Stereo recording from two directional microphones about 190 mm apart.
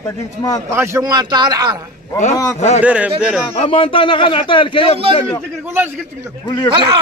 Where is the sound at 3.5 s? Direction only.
30° left (ahead or behind).